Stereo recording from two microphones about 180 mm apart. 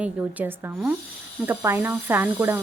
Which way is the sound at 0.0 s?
10° right (ahead or behind).